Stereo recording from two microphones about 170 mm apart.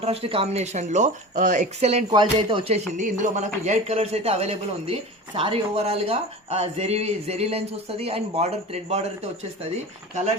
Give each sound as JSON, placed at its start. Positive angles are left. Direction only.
{"t": 0.0, "sound": "speech", "side_deg": -35}